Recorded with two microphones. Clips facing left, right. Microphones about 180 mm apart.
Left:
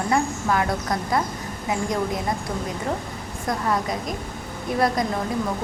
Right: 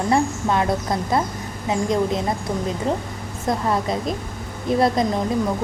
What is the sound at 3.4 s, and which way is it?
A woman's voice, 25° right (ahead or behind).